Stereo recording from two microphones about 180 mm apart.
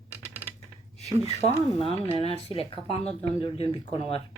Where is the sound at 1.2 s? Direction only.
35° left (ahead or behind).